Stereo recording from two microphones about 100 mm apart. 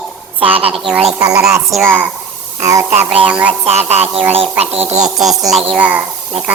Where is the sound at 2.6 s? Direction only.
30° right (ahead or behind).